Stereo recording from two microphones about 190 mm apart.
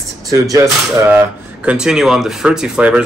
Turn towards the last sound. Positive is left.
turn(degrees=-5)  # may be behind; listen again after turning